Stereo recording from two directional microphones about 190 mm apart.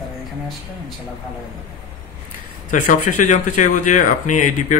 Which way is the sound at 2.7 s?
40° left (ahead or behind).